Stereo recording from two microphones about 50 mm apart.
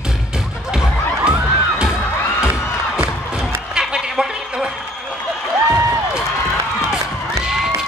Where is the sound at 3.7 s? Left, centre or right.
Centre.